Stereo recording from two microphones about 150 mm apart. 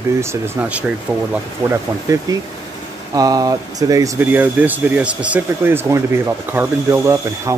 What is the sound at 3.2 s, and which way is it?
Speech, 25° right (ahead or behind).